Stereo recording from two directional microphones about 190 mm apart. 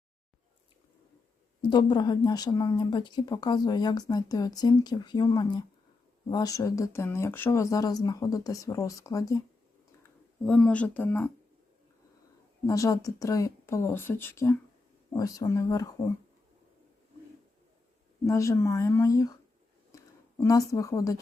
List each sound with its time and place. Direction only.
1.7 s speech: 25° left (ahead or behind)
10.0 s speech: 5° left (ahead or behind)
12.6 s speech: 20° left (ahead or behind)
18.3 s speech: 15° left (ahead or behind)